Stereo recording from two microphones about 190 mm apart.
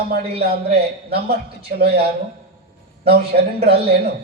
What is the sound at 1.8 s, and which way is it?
Speech, 55° right (ahead or behind).